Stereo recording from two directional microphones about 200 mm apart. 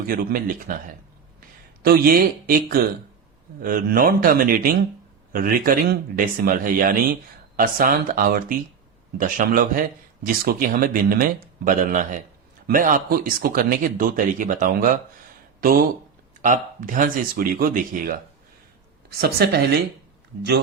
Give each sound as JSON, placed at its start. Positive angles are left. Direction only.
{"t": 0.1, "sound": "speech", "side_deg": -45}
{"t": 19.2, "sound": "speech", "side_deg": -50}